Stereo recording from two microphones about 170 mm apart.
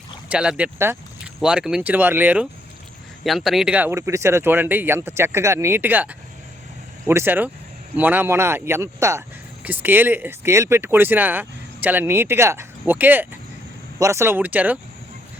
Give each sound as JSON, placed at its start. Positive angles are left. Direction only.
{"t": 0.3, "sound": "speech", "side_deg": -5}